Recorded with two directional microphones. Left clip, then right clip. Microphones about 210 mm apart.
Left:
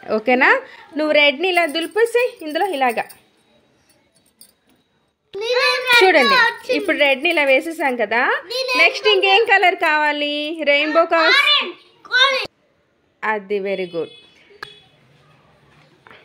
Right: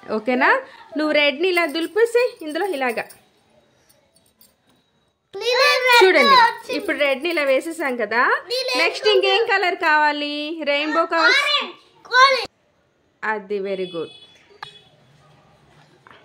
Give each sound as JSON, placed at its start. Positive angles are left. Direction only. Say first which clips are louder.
{"t": 0.0, "sound": "a woman's voice", "louder": "left 4 dB", "side_deg": 5}
{"t": 0.9, "sound": "a woman's voice", "louder": "left 3 dB", "side_deg": -10}
{"t": 5.4, "sound": "child singing", "louder": "right 1 dB", "side_deg": -50}
{"t": 6.2, "sound": "a child's voice", "louder": "right 1 dB", "side_deg": -45}
{"t": 6.7, "sound": "a woman's voice", "louder": "left 4 dB", "side_deg": 0}
{"t": 11.1, "sound": "a child's voice", "louder": "left 1 dB", "side_deg": -30}
{"t": 13.2, "sound": "a woman's voice", "louder": "left 3 dB", "side_deg": 5}
{"t": 16.1, "sound": "a sound", "louder": "left 3 dB", "side_deg": 10}